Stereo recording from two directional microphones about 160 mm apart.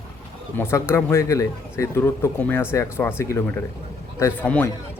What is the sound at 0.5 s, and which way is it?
A man's voice, 15° left (ahead or behind).